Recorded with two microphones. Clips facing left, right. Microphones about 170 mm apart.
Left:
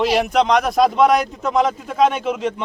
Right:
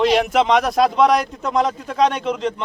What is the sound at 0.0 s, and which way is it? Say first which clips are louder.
Speech: right 1 dB; centre (ahead or behind).